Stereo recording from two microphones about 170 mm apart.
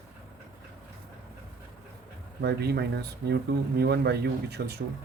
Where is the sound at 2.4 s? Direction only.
70° right (ahead or behind).